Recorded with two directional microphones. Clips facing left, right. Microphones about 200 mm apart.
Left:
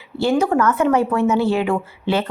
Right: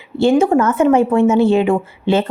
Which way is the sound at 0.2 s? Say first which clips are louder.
Right 5 dB; 25° right (ahead or behind).